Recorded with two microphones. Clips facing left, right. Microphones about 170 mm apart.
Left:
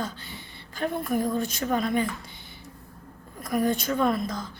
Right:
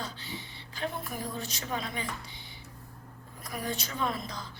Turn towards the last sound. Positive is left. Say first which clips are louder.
# left 8 dB
turn(degrees=45)  # may be behind; listen again after turning